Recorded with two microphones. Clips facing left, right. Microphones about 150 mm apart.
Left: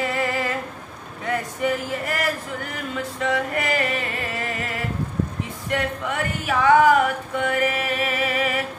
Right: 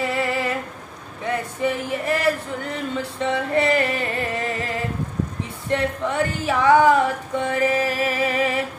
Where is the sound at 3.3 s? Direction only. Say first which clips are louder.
Right 5 dB; 30° right (ahead or behind).